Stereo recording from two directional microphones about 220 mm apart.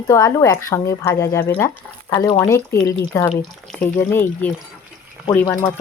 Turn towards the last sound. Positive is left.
turn(degrees=10)  # may be behind; listen again after turning